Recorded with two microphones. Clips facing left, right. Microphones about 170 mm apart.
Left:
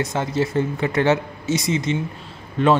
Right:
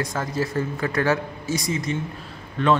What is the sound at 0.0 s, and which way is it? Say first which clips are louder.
A man's voice: left 4 dB; 25° left (ahead or behind).